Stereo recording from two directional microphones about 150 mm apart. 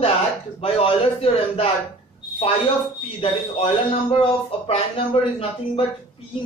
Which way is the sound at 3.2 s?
40° left (ahead or behind).